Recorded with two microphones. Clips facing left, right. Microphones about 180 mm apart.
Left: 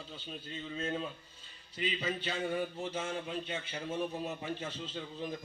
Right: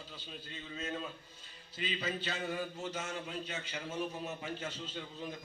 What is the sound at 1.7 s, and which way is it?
A man's voice, 25° left (ahead or behind).